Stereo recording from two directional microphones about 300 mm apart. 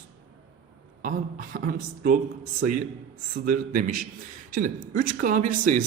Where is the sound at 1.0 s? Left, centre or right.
Right.